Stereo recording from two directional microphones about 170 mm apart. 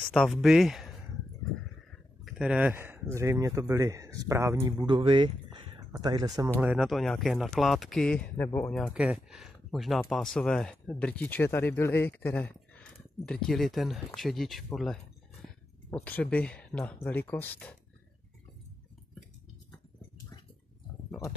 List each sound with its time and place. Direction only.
0.1 s speech: 5° left (ahead or behind)
2.2 s speech: 5° right (ahead or behind); by 6.5 s 20° right (ahead or behind)
6.6 s speech: 5° right (ahead or behind)